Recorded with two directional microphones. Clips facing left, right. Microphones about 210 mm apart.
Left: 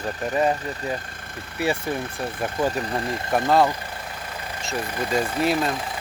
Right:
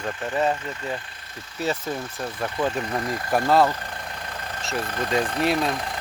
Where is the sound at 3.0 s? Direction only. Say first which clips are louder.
Even; 25° left (ahead or behind).